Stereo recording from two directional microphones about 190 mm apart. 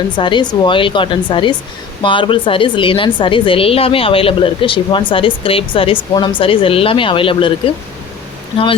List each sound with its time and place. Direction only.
0.2 s speech: 25° left (ahead or behind)